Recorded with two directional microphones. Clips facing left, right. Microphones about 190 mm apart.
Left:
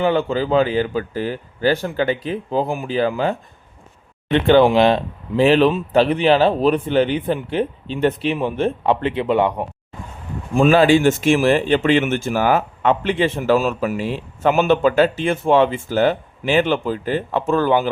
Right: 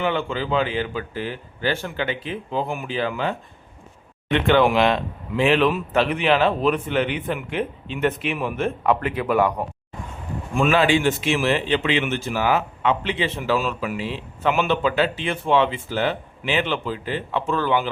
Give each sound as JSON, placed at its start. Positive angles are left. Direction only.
{"t": 0.0, "sound": "speech", "side_deg": 40}
{"t": 10.5, "sound": "speech", "side_deg": 35}